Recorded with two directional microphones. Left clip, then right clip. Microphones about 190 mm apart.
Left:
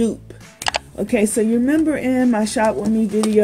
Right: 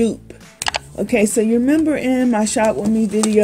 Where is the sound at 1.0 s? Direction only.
30° right (ahead or behind).